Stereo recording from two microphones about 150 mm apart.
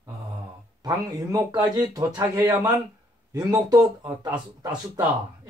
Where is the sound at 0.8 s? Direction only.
25° right (ahead or behind).